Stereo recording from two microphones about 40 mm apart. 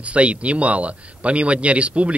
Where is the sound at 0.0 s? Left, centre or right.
Right.